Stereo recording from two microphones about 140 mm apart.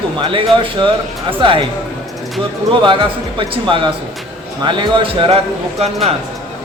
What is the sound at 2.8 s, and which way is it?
Speech, 35° right (ahead or behind).